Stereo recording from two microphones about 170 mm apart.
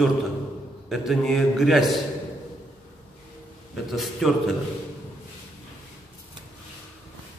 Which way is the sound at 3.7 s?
Centre (ahead or behind).